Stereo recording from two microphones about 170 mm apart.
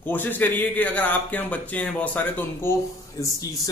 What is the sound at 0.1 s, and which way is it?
Speech, 10° left (ahead or behind).